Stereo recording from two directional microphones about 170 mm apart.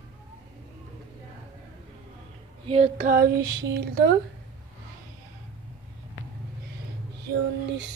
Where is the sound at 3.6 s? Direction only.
85° right.